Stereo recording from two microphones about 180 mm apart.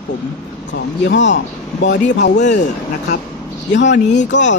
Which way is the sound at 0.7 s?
85° left.